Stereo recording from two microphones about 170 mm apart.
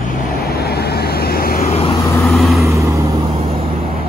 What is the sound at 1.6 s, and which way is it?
Vehicle, 35° left (ahead or behind).